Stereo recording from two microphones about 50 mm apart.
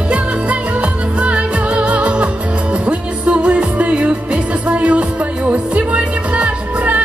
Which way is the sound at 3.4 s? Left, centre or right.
Right.